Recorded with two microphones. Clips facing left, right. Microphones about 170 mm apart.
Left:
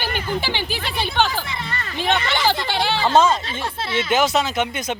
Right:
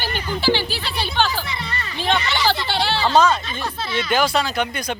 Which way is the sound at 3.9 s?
25° left (ahead or behind).